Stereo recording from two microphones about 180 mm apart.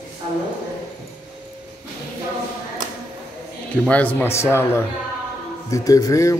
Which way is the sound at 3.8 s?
10° left (ahead or behind).